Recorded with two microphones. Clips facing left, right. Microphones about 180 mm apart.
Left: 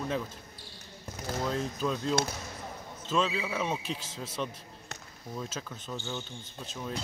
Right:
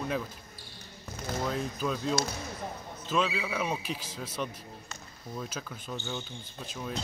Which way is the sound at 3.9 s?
25° left (ahead or behind).